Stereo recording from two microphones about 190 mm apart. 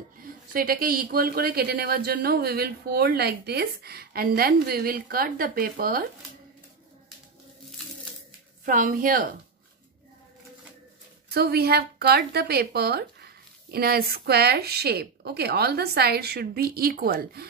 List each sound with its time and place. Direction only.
0.2 s a woman's voice: 50° right (ahead or behind)
8.6 s a woman's voice: 45° right (ahead or behind)
11.2 s a woman's voice: 55° right (ahead or behind)